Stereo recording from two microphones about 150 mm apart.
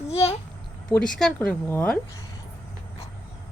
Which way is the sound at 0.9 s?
5° left (ahead or behind).